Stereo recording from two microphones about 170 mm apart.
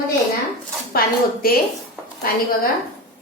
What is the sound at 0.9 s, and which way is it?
Speech, 60° left (ahead or behind).